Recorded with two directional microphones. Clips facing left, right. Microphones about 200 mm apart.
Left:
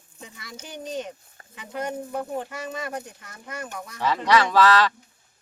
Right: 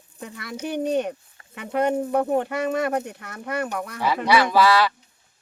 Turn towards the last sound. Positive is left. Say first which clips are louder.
# right 1 dB
turn(degrees=-10)  # may be behind; listen again after turning